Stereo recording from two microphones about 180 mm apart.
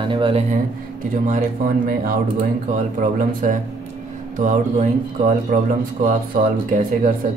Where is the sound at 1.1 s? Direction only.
45° right (ahead or behind).